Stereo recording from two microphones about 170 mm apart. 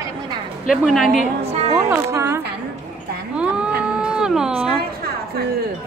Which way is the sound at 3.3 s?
5° right (ahead or behind).